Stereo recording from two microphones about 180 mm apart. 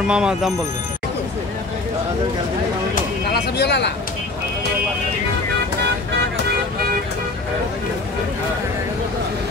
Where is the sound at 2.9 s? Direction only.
65° left (ahead or behind).